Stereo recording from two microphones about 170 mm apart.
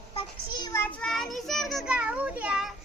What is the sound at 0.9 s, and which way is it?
Child singing, 5° left (ahead or behind).